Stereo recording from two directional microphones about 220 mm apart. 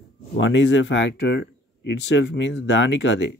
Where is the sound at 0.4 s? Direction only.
55° left (ahead or behind).